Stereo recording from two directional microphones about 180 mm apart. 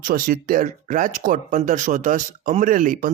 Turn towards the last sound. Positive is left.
turn(degrees=-45)  # may be behind; listen again after turning